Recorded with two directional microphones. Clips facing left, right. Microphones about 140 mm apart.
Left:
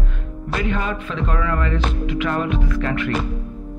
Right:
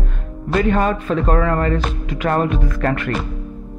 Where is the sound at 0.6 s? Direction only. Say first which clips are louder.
Right 6 dB; 45° right (ahead or behind).